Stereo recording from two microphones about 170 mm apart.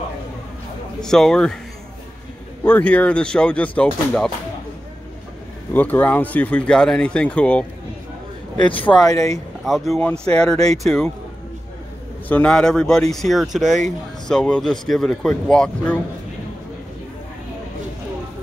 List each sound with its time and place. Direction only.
1.0 s speech: 5° left (ahead or behind)
2.6 s speech: 10° left (ahead or behind)
5.7 s speech: 10° left (ahead or behind)
8.5 s speech: 30° left (ahead or behind)
9.7 s speech: 5° left (ahead or behind)
12.3 s speech: 5° left (ahead or behind)